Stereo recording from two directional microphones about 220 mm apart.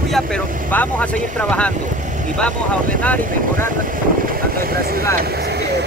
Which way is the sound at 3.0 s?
5° left (ahead or behind).